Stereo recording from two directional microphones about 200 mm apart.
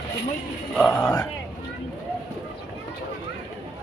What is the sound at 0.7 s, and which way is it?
Speech, 10° left (ahead or behind).